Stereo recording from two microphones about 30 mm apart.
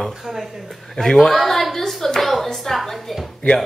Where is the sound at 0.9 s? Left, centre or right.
Centre.